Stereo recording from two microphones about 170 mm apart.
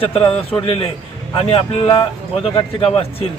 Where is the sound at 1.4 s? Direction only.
35° left (ahead or behind).